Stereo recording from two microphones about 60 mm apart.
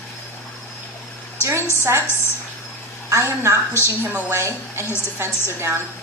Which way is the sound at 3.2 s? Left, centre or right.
Right.